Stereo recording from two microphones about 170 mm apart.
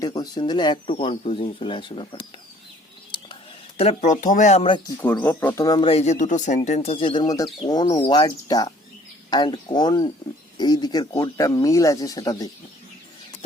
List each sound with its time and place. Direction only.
0.0 s speech: 25° left (ahead or behind)
3.8 s speech: 40° left (ahead or behind)
4.9 s speech: 10° left (ahead or behind)
5.8 s speech: 35° left (ahead or behind); by 12.5 s 20° left (ahead or behind)